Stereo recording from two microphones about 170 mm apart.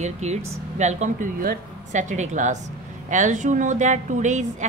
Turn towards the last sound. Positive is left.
turn(degrees=-45)  # may be behind; listen again after turning